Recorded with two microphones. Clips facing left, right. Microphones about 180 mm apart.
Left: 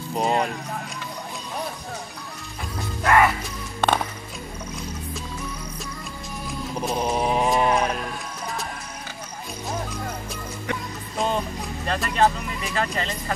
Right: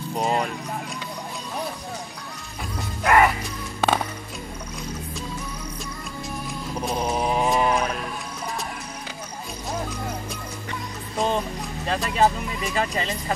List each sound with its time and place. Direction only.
0.1 s speech: centre (ahead or behind)
3.0 s music: 15° right (ahead or behind)
6.8 s a sound: centre (ahead or behind)
11.1 s speech: centre (ahead or behind)